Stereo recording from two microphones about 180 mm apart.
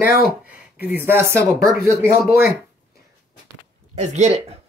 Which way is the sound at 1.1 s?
15° right (ahead or behind).